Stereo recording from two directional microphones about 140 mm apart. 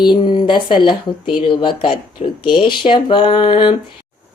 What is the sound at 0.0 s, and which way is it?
Speech, 30° left (ahead or behind).